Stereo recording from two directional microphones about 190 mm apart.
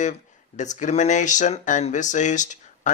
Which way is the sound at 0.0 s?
40° left (ahead or behind).